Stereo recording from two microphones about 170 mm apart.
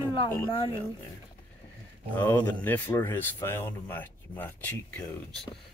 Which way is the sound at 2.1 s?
10° left (ahead or behind).